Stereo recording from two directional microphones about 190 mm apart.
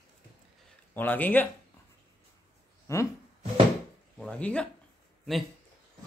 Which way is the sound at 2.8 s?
15° left (ahead or behind).